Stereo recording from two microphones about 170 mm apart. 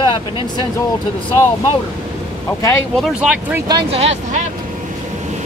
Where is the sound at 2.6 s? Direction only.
15° left (ahead or behind).